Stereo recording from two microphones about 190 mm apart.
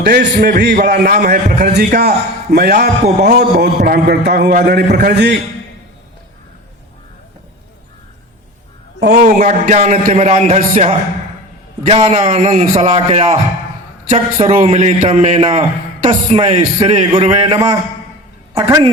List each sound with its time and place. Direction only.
0.0 s a man's voice: 65° right (ahead or behind)
9.2 s a man's voice: 40° right (ahead or behind); by 18.9 s 20° right (ahead or behind)